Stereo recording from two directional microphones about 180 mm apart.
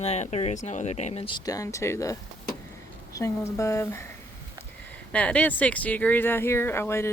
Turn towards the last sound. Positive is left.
turn(degrees=15)  # may be behind; listen again after turning